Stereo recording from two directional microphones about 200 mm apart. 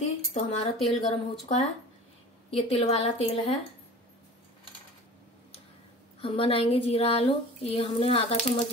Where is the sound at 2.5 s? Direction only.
35° left (ahead or behind).